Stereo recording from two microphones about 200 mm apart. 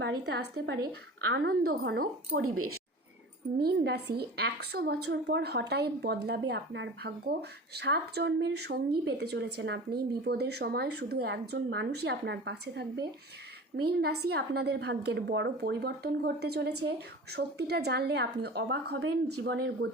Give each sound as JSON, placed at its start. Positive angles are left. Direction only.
{"t": 0.3, "sound": "a woman's voice", "side_deg": -55}
{"t": 2.4, "sound": "speech", "side_deg": -90}
{"t": 3.6, "sound": "a woman's voice", "side_deg": -55}